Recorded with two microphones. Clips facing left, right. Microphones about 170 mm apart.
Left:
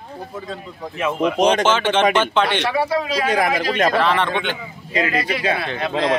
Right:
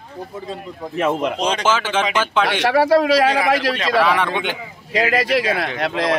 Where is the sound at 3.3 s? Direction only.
45° left (ahead or behind).